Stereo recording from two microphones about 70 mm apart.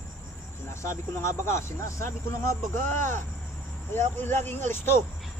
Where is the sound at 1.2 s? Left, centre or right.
Left.